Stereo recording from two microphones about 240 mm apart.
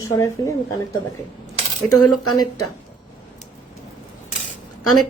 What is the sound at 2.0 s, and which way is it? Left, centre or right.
Speech, left.